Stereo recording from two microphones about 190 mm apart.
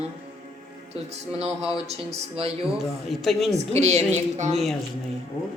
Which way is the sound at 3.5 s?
35° right (ahead or behind).